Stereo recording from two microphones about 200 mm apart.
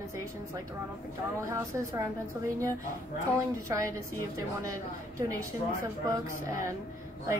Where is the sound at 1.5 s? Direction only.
15° right (ahead or behind).